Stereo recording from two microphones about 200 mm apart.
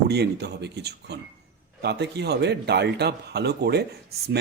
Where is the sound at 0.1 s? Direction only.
55° right (ahead or behind).